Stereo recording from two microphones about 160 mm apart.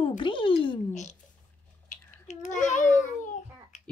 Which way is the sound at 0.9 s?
50° left (ahead or behind).